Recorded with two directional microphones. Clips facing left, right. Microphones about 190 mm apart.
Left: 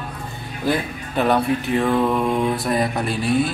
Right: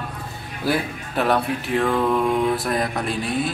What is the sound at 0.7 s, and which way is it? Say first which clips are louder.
Speech: left 1 dB; centre (ahead or behind).